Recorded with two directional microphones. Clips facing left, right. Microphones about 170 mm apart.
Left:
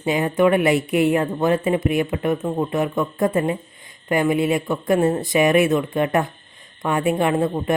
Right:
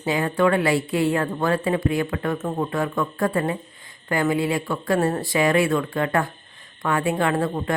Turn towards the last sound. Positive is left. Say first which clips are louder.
# left 3 dB
turn(degrees=20)  # may be behind; listen again after turning